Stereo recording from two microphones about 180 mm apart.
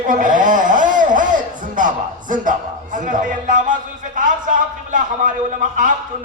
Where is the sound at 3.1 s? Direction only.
45° right (ahead or behind).